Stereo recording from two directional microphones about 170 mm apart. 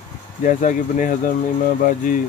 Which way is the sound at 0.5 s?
50° left (ahead or behind).